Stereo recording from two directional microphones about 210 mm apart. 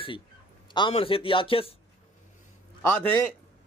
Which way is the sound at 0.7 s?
25° left (ahead or behind).